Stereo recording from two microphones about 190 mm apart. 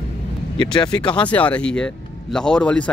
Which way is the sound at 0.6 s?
20° left (ahead or behind).